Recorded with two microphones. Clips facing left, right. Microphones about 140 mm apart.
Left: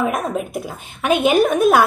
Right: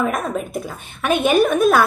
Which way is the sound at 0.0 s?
10° left (ahead or behind).